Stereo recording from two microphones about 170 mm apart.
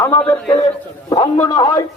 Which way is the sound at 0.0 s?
15° left (ahead or behind).